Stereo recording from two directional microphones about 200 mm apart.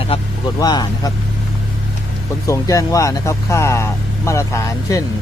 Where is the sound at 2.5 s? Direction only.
15° left (ahead or behind).